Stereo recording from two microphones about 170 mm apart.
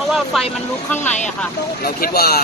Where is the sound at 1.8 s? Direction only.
65° left (ahead or behind).